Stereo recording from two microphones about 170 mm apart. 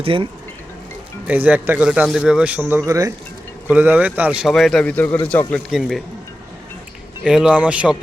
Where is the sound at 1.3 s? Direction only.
10° right (ahead or behind); by 5.6 s 10° left (ahead or behind).